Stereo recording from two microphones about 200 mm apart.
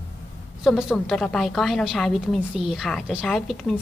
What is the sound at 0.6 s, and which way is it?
A woman's voice, centre (ahead or behind).